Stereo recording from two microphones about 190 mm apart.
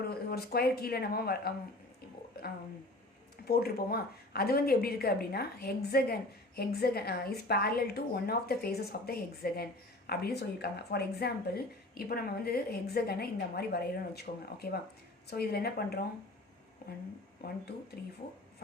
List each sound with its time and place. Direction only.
0.0 s speech: 55° left (ahead or behind)
3.4 s speech: 55° left (ahead or behind)